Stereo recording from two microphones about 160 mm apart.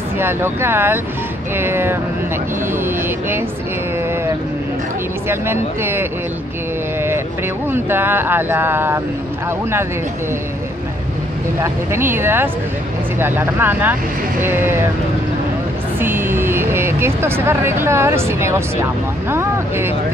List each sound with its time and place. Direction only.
0.2 s speech: 15° right (ahead or behind)
5.3 s speech: 15° right (ahead or behind)
7.7 s speech: 15° right (ahead or behind)
11.6 s speech: 15° right (ahead or behind)
16.0 s speech: 15° right (ahead or behind)